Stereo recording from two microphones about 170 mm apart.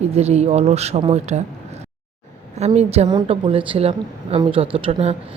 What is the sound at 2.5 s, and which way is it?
Speech, 40° right (ahead or behind).